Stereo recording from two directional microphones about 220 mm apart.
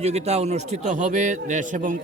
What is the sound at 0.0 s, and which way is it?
Speech, 30° right (ahead or behind).